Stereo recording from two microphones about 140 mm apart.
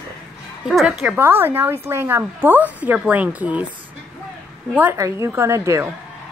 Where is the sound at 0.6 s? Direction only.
5° right (ahead or behind).